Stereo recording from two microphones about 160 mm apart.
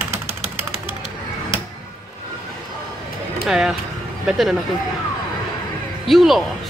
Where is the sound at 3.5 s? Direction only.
5° right (ahead or behind).